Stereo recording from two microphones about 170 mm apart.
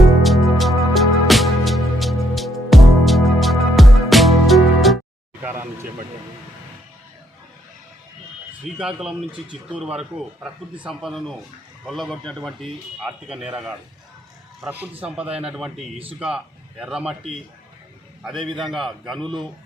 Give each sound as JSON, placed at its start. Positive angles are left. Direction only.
{"t": 0.2, "sound": "music", "side_deg": 0}
{"t": 5.4, "sound": "vehicle", "side_deg": -15}
{"t": 8.8, "sound": "a man's voice", "side_deg": -5}
{"t": 18.2, "sound": "a man's voice", "side_deg": 0}